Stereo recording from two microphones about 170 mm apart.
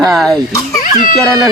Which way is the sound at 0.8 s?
55° left (ahead or behind).